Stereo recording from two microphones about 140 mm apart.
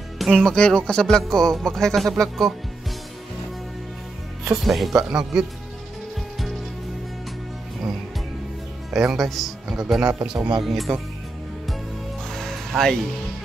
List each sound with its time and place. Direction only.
0.2 s speech: 5° left (ahead or behind)
4.5 s speech: centre (ahead or behind)
8.9 s speech: centre (ahead or behind)
10.3 s speech: 35° right (ahead or behind)
10.6 s speech: centre (ahead or behind)
12.3 s music: centre (ahead or behind)